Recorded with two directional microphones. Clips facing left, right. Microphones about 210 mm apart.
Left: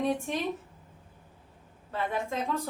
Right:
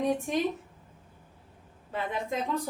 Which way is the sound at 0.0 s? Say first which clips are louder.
Right 1 dB; 15° right (ahead or behind).